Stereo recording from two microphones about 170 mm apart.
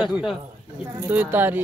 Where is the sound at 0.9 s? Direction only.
10° right (ahead or behind).